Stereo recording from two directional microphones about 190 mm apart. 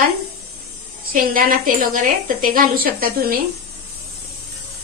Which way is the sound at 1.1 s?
50° right (ahead or behind).